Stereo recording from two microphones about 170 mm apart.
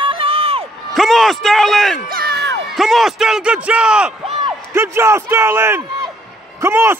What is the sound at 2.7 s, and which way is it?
A man's voice, centre (ahead or behind).